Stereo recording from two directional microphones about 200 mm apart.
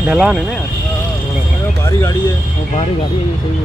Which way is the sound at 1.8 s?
15° left (ahead or behind).